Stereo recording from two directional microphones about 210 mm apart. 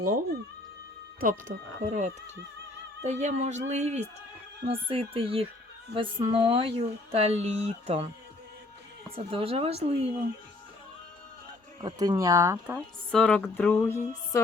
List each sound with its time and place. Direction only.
1.2 s speech: 40° right (ahead or behind)
9.1 s speech: 25° right (ahead or behind)
11.8 s speech: 20° right (ahead or behind)
13.1 s music: 5° left (ahead or behind)